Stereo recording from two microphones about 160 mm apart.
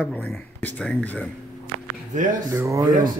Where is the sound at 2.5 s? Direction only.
20° right (ahead or behind).